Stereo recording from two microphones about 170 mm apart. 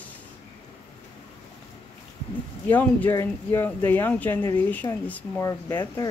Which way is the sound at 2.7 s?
10° left (ahead or behind).